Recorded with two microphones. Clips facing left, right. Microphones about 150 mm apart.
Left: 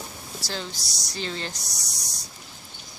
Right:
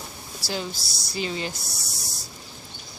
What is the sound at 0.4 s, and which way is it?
Speech, 10° right (ahead or behind).